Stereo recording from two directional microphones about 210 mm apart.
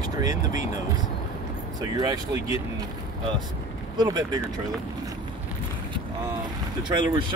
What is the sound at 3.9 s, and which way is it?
Speech, 20° right (ahead or behind).